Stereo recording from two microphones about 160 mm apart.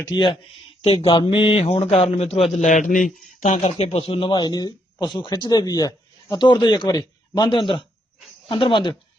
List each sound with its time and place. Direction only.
0.1 s a man's voice: 25° left (ahead or behind)